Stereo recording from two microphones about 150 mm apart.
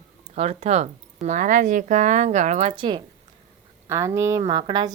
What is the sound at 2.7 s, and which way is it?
Speech, 35° right (ahead or behind).